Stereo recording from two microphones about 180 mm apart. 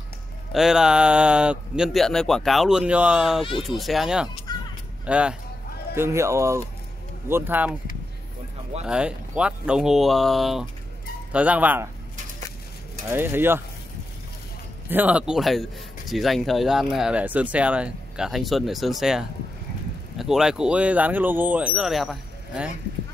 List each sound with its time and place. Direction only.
0.5 s a man's voice: centre (ahead or behind)
4.5 s a sound: 20° left (ahead or behind)
5.0 s speech: 5° right (ahead or behind)
8.8 s a man's voice: 5° right (ahead or behind)
13.1 s speech: 10° right (ahead or behind)
14.9 s a man's voice: 10° right (ahead or behind)